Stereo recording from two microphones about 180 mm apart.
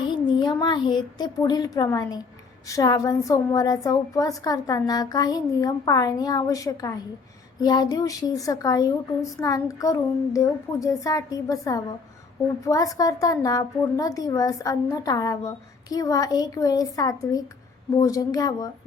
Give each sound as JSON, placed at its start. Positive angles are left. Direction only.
{"t": 0.0, "sound": "a woman's voice", "side_deg": 25}